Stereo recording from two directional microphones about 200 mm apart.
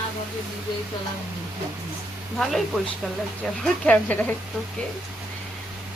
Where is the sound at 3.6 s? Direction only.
5° left (ahead or behind).